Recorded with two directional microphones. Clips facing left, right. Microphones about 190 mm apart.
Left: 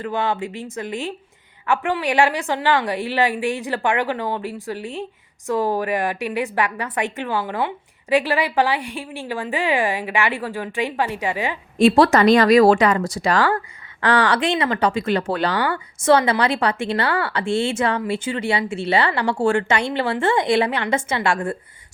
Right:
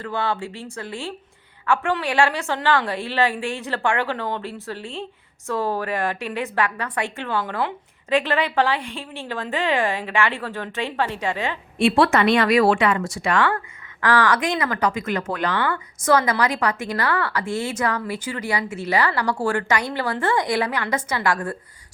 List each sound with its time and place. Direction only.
0.0 s a woman's voice: 20° left (ahead or behind)
11.8 s speech: 40° left (ahead or behind)